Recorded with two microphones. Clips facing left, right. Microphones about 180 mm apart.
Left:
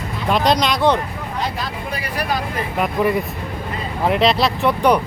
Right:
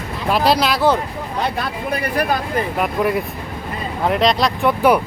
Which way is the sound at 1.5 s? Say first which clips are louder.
Right 4 dB; 55° right (ahead or behind).